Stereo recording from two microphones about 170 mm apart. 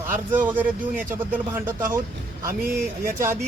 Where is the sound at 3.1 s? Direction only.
15° right (ahead or behind).